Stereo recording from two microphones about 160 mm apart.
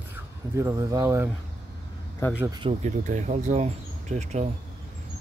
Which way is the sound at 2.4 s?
25° right (ahead or behind).